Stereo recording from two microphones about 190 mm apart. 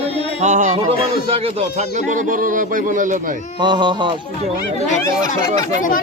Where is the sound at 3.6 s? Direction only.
25° right (ahead or behind).